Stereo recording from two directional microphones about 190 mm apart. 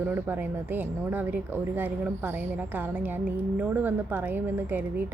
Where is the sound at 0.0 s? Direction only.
10° right (ahead or behind).